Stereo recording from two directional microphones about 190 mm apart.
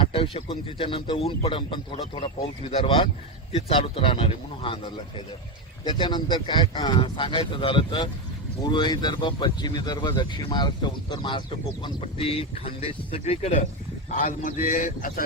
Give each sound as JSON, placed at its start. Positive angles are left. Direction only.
{"t": 0.0, "sound": "speech", "side_deg": 30}
{"t": 14.2, "sound": "a man's voice", "side_deg": 45}